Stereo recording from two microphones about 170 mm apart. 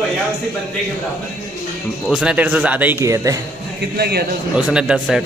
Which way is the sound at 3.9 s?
70° right (ahead or behind).